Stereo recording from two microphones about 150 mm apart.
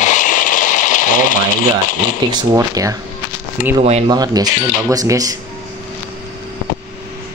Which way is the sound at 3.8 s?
45° right (ahead or behind).